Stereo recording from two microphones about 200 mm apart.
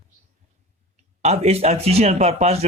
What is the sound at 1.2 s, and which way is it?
Speech, 30° right (ahead or behind).